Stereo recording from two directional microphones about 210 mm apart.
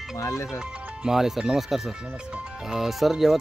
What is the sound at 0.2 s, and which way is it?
Speech, 15° left (ahead or behind).